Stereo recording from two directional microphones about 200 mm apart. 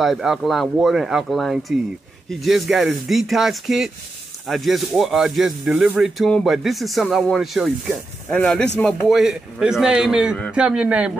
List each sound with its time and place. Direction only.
0.0 s speech: centre (ahead or behind)